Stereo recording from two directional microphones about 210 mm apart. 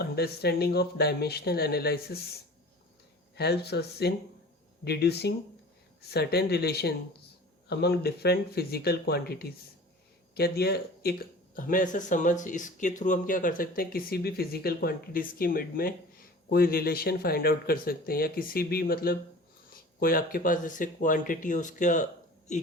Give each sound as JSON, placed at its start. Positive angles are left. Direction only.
{"t": 0.0, "sound": "speech", "side_deg": 50}
{"t": 3.3, "sound": "speech", "side_deg": 50}